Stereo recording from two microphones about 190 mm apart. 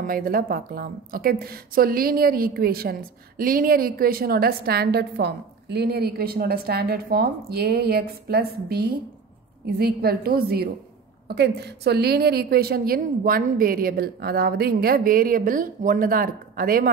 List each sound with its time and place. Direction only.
0.0 s a woman's voice: 50° right (ahead or behind)